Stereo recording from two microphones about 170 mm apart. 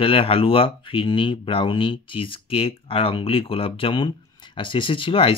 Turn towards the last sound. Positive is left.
turn(degrees=30)  # may be behind; listen again after turning